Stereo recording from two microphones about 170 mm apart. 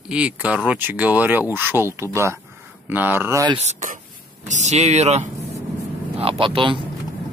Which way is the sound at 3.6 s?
45° right (ahead or behind).